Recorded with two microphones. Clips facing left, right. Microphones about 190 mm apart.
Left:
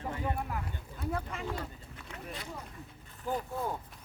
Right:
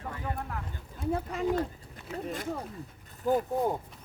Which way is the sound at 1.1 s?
35° right (ahead or behind).